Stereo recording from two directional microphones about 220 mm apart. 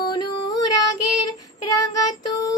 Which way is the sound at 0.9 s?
90° left.